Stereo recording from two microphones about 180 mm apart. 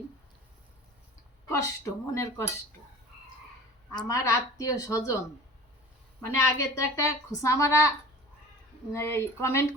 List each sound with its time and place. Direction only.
1.5 s speech: 15° left (ahead or behind)
3.9 s a woman's voice: 20° left (ahead or behind)
6.3 s a woman's voice: 15° left (ahead or behind)
8.9 s a woman's voice: 15° left (ahead or behind)